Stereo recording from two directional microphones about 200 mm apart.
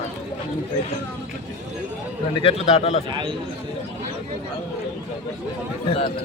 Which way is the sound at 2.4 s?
30° left (ahead or behind).